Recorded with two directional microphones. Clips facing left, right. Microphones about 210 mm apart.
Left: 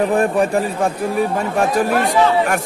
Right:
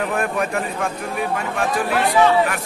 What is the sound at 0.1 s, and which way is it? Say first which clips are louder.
Speech: left 6 dB; 30° left (ahead or behind).